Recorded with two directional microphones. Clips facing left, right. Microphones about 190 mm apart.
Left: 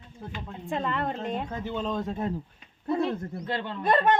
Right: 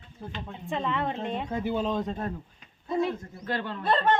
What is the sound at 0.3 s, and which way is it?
Speech, centre (ahead or behind).